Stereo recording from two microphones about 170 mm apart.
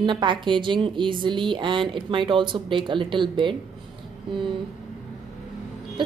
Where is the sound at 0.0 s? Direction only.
30° right (ahead or behind).